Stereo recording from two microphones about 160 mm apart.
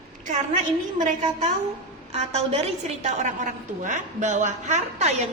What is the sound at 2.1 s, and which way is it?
A woman's voice, 40° right (ahead or behind).